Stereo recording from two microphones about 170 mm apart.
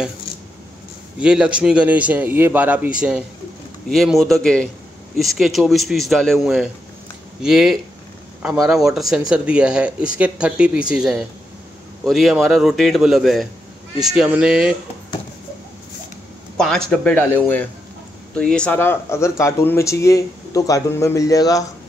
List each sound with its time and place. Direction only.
1.2 s a man's voice: 5° right (ahead or behind)
16.5 s speech: 5° left (ahead or behind); by 21.6 s 20° left (ahead or behind)